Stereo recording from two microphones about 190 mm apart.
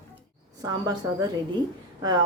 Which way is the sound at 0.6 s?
20° right (ahead or behind).